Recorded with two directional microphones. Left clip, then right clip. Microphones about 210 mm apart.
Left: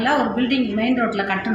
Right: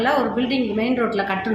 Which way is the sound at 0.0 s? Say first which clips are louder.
Even; 15° right (ahead or behind).